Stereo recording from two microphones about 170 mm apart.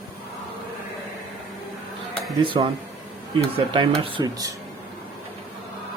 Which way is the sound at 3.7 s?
30° right (ahead or behind).